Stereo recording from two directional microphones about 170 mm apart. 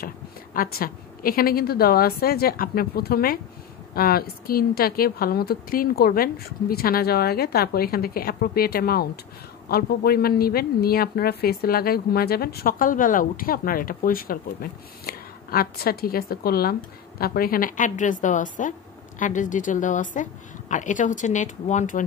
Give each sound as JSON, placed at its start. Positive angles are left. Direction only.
{"t": 0.6, "sound": "a woman's voice", "side_deg": 60}